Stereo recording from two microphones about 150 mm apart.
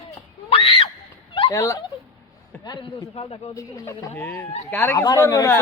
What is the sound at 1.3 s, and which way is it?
Turkey, 35° left (ahead or behind).